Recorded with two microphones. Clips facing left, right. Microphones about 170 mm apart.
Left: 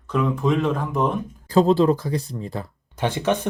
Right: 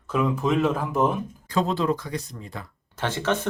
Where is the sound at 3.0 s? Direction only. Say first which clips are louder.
Left 3 dB; 15° left (ahead or behind).